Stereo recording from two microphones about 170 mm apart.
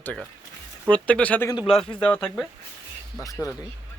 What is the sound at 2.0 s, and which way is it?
Speech, 5° left (ahead or behind).